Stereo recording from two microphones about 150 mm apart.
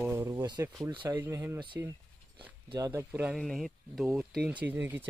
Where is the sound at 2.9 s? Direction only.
15° right (ahead or behind).